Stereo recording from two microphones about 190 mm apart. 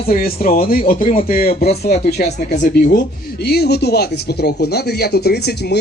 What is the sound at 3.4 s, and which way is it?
A man's voice, 60° left (ahead or behind).